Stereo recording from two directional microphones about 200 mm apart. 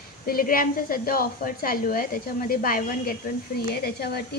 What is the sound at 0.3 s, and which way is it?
A woman's voice, 45° left (ahead or behind).